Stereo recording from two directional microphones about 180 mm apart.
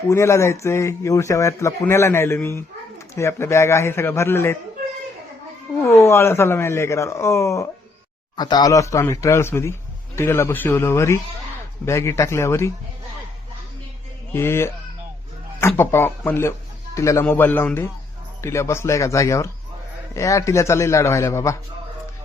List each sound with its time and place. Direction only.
0.1 s a man's voice: 15° left (ahead or behind)
5.8 s a man's voice: 15° left (ahead or behind)
14.3 s a man's voice: 15° left (ahead or behind)